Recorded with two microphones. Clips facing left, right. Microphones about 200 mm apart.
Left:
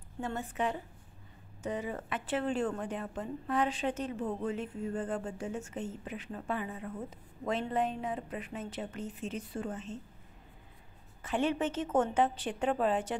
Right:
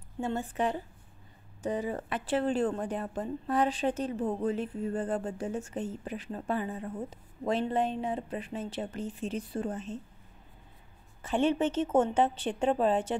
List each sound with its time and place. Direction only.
0.2 s a woman's voice: 30° right (ahead or behind)
11.2 s a woman's voice: 25° right (ahead or behind)